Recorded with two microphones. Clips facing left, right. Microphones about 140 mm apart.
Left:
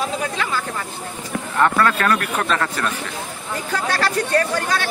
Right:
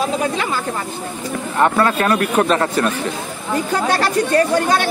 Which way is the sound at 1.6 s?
20° right (ahead or behind).